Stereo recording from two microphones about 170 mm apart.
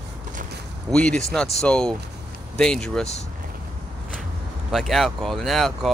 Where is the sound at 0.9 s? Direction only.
5° left (ahead or behind).